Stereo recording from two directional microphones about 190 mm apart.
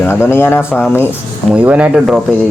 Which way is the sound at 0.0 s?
10° left (ahead or behind).